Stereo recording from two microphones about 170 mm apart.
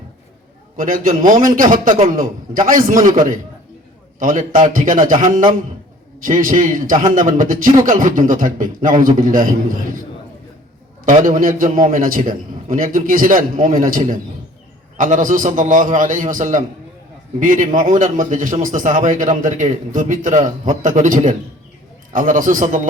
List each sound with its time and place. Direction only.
0.8 s a man's voice: 55° right (ahead or behind)
4.2 s a man's voice: 50° right (ahead or behind)
11.0 s a man's voice: 50° right (ahead or behind)